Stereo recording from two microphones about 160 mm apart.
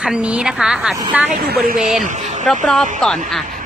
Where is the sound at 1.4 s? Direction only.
75° right (ahead or behind).